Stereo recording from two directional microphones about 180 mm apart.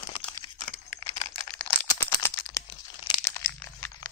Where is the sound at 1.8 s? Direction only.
15° left (ahead or behind).